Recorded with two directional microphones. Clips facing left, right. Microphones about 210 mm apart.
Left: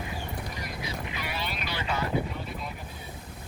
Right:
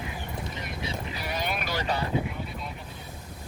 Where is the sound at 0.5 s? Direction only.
25° right (ahead or behind).